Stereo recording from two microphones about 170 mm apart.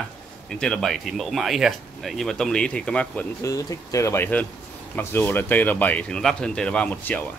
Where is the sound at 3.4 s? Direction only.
20° left (ahead or behind).